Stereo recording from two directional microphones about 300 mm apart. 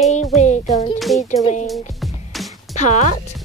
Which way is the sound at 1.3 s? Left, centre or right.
Left.